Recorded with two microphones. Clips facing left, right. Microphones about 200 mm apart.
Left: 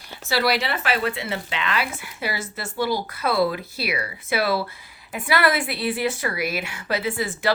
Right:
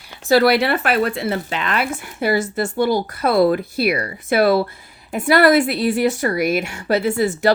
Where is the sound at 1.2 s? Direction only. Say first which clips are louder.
Right 6 dB; 45° right (ahead or behind).